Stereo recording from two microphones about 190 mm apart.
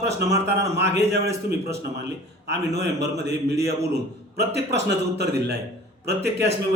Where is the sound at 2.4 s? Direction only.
60° right (ahead or behind).